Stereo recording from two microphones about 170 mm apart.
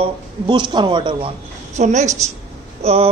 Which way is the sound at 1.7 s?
45° right (ahead or behind).